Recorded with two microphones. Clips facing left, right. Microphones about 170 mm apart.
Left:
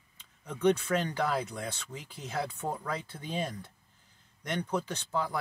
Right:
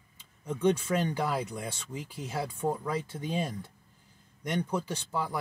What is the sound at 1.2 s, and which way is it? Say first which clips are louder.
Speech: even; 10° right (ahead or behind).